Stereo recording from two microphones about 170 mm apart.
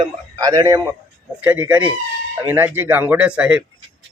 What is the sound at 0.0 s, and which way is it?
A man's voice, 20° right (ahead or behind).